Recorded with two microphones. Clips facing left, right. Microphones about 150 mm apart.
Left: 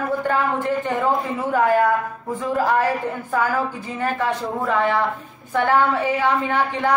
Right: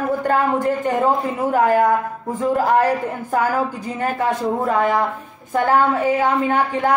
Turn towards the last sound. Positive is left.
turn(degrees=-45)  # may be behind; listen again after turning